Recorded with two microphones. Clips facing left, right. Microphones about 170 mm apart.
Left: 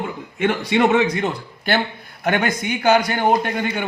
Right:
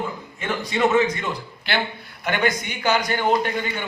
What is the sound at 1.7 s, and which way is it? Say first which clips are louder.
A man's voice: left 5 dB; 50° left (ahead or behind).